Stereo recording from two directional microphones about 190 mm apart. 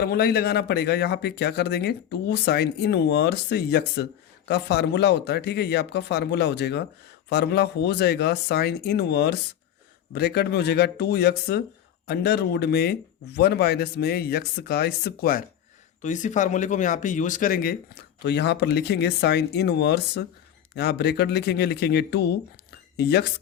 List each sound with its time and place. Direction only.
0.0 s speech: 55° left (ahead or behind)